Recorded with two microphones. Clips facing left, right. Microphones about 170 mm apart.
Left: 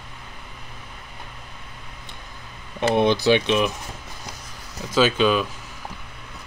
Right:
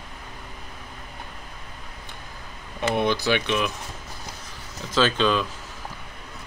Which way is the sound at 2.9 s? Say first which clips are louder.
Left 5 dB; 20° left (ahead or behind).